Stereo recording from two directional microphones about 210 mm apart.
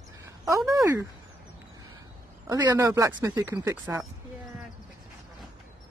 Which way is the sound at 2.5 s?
20° right (ahead or behind).